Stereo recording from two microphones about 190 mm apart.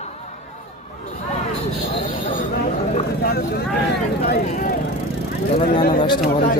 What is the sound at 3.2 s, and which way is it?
Vehicle, 55° left (ahead or behind).